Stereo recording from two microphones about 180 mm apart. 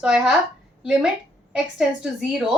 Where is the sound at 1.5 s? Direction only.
5° right (ahead or behind).